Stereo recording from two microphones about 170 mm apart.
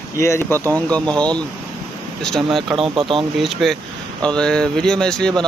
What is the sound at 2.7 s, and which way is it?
Speech, 30° right (ahead or behind).